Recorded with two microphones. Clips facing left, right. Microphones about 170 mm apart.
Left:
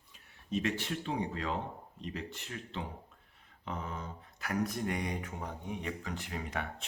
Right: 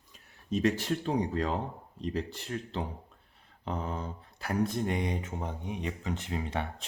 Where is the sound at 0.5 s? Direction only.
40° right (ahead or behind).